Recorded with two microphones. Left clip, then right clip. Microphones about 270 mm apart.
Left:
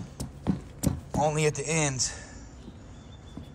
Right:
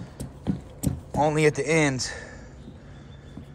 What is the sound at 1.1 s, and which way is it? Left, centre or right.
A man's voice, centre.